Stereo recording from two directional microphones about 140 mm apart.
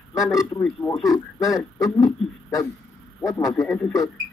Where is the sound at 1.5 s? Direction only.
25° left (ahead or behind).